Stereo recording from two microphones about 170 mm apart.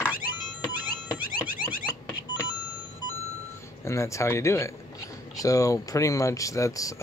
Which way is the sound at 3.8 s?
15° left (ahead or behind).